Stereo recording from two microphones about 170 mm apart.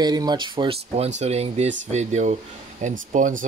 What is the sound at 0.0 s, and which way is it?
Speech, 25° right (ahead or behind).